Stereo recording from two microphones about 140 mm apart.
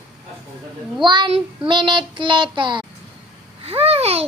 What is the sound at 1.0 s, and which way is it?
Child singing, 35° right (ahead or behind).